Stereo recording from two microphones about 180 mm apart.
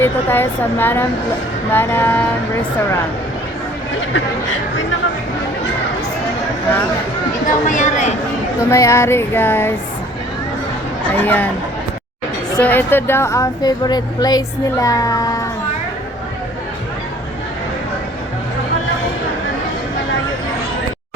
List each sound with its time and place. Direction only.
0.0 s a woman's voice: 10° left (ahead or behind)
7.4 s speech: 45° left (ahead or behind)
8.5 s a woman's voice: 15° left (ahead or behind)
11.2 s a woman's voice: 10° left (ahead or behind)
12.5 s a woman's voice: 10° left (ahead or behind)